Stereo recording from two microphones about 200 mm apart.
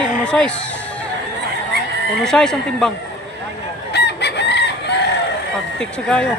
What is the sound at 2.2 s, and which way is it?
Speech, 5° left (ahead or behind).